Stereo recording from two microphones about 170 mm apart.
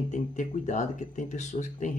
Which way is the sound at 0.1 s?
45° left (ahead or behind).